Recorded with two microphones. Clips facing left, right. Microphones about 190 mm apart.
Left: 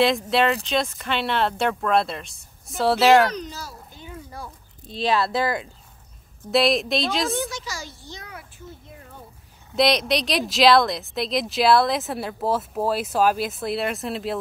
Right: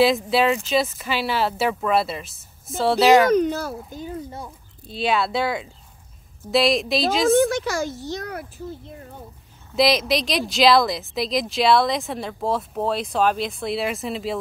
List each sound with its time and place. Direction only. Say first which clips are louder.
0.0 s speech: right 2 dB; centre (ahead or behind)
3.3 s speech: right 12 dB; 55° right (ahead or behind)
4.8 s speech: even; centre (ahead or behind)
7.3 s speech: right 11 dB; 55° right (ahead or behind)
8.4 s a child's voice: right 8 dB; 35° right (ahead or behind)
9.8 s speech: right 1 dB; centre (ahead or behind)